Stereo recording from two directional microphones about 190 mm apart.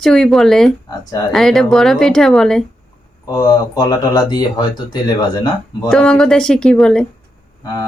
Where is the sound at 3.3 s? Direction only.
20° left (ahead or behind).